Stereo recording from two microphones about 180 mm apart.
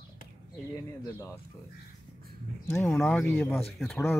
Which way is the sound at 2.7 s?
10° left (ahead or behind).